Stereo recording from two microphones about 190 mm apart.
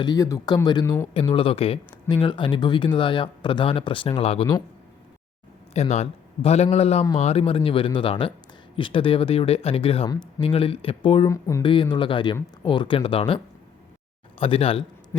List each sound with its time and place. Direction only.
0.0 s speech: 20° left (ahead or behind)
5.7 s a man's voice: 35° left (ahead or behind)
11.3 s speech: 15° left (ahead or behind)
11.7 s speech: 25° left (ahead or behind)